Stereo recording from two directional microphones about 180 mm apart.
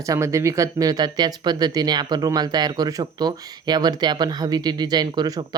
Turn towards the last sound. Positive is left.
turn(degrees=-20)  # may be behind; listen again after turning